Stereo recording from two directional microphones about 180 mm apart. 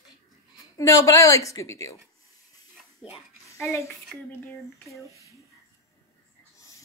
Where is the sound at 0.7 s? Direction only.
15° left (ahead or behind).